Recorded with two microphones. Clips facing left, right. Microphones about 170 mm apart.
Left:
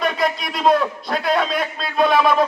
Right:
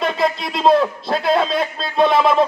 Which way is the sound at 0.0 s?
25° right (ahead or behind).